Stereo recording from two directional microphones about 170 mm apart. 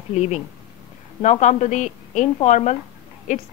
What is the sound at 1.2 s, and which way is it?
Speech, 40° left (ahead or behind).